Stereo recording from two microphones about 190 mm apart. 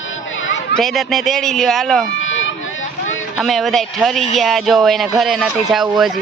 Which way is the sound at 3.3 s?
Centre (ahead or behind).